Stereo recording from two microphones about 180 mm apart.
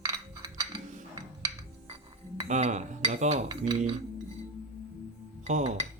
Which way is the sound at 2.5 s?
40° right (ahead or behind).